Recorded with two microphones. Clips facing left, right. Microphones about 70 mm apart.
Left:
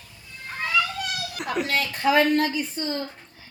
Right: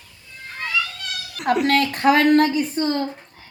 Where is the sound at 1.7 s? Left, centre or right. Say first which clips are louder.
Right 5 dB; right.